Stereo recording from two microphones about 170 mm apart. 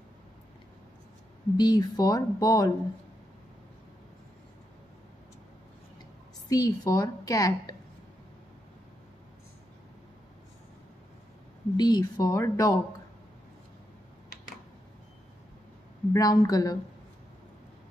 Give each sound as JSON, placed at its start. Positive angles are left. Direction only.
{"t": 1.6, "sound": "a woman's voice", "side_deg": 25}
{"t": 6.5, "sound": "a woman's voice", "side_deg": 20}
{"t": 11.7, "sound": "a woman's voice", "side_deg": 25}
{"t": 16.1, "sound": "a woman's voice", "side_deg": 20}